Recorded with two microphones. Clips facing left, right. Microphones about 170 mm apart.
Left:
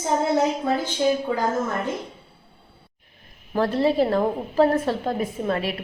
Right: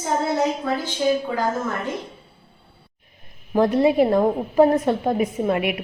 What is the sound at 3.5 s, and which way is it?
A woman's voice, 15° right (ahead or behind).